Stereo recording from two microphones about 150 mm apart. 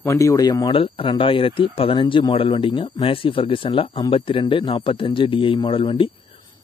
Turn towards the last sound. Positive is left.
turn(degrees=35)  # may be behind; listen again after turning